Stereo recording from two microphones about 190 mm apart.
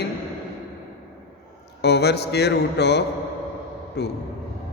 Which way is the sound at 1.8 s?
60° left (ahead or behind).